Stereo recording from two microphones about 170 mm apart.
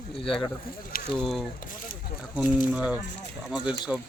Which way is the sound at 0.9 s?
60° left (ahead or behind).